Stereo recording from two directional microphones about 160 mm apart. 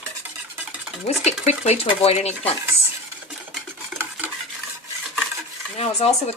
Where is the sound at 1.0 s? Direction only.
40° left (ahead or behind).